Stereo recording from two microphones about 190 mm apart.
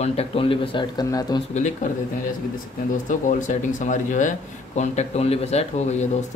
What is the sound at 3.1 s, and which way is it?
Speech, 40° left (ahead or behind).